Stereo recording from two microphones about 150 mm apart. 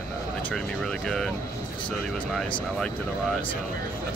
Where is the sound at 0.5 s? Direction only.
5° left (ahead or behind).